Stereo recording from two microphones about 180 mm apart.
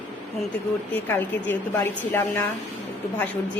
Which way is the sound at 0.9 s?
10° left (ahead or behind).